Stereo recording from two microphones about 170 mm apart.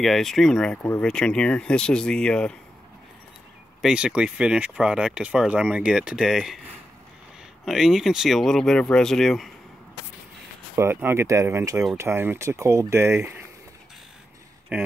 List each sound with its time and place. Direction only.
0.0 s speech: centre (ahead or behind)
3.8 s speech: 5° right (ahead or behind)
7.6 s speech: centre (ahead or behind)
10.8 s speech: 15° right (ahead or behind)
14.7 s speech: 10° right (ahead or behind)